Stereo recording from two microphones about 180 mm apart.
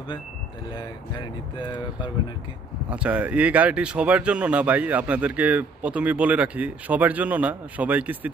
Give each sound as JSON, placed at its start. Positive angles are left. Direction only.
{"t": 0.7, "sound": "speech", "side_deg": 25}
{"t": 2.9, "sound": "speech", "side_deg": -5}